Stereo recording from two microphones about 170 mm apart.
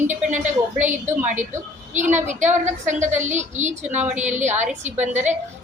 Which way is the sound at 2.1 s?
45° right (ahead or behind).